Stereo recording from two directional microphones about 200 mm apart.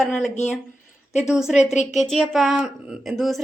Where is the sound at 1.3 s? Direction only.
5° right (ahead or behind).